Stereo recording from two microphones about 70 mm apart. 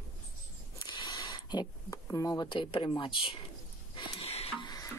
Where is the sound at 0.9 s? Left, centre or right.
Left.